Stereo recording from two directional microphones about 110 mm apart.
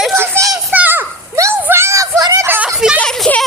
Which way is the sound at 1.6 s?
20° right (ahead or behind).